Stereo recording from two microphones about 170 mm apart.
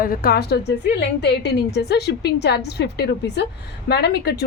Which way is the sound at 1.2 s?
75° left (ahead or behind).